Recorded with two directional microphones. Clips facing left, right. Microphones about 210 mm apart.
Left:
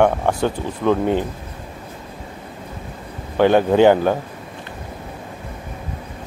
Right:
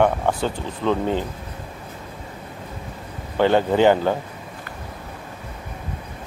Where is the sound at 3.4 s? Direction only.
15° left (ahead or behind).